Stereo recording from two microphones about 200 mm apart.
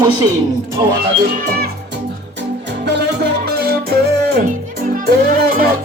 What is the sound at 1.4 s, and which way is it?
Speech, 50° right (ahead or behind).